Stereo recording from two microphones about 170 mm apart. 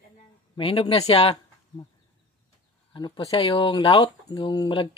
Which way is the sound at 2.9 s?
25° left (ahead or behind).